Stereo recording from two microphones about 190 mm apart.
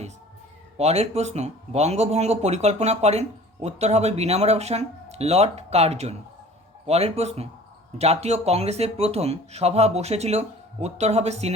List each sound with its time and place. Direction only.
0.8 s speech: 35° right (ahead or behind)